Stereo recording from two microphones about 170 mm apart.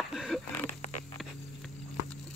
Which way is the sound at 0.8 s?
45° left (ahead or behind).